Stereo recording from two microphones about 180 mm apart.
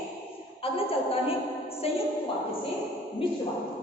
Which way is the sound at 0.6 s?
30° left (ahead or behind).